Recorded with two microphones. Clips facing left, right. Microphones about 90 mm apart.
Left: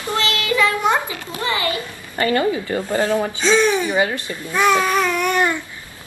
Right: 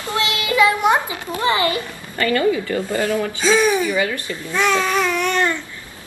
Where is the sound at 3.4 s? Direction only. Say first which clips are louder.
Right 1 dB; 10° right (ahead or behind).